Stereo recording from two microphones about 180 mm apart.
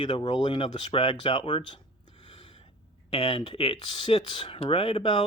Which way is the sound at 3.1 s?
30° left (ahead or behind).